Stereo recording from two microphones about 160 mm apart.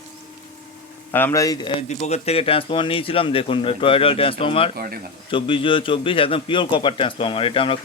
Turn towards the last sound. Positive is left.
turn(degrees=35)  # may be behind; listen again after turning